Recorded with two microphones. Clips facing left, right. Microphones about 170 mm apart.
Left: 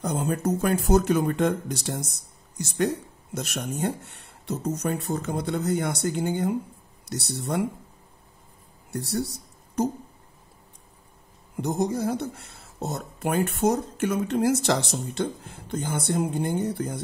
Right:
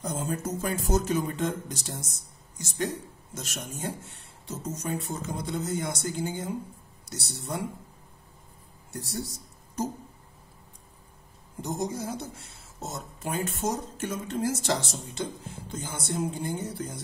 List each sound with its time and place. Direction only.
0.0 s speech: 65° left (ahead or behind)
8.9 s speech: 60° left (ahead or behind)
11.6 s speech: 60° left (ahead or behind)